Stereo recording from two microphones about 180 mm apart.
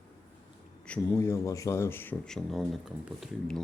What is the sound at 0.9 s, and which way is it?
Speech, 10° left (ahead or behind).